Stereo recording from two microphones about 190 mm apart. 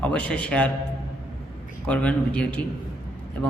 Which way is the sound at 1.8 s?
5° left (ahead or behind).